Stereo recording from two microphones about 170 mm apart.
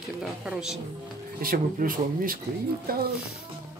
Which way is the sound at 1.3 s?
55° right (ahead or behind).